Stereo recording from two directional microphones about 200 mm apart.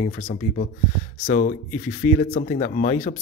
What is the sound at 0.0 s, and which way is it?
Speech, 45° left (ahead or behind).